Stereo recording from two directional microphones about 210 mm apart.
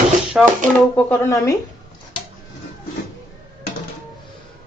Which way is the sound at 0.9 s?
10° left (ahead or behind).